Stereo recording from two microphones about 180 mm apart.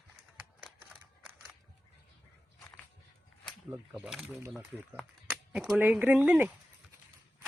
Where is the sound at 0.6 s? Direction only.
10° right (ahead or behind).